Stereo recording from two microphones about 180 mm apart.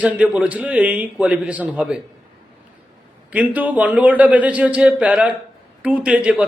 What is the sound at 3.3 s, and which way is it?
A man's voice, 10° right (ahead or behind).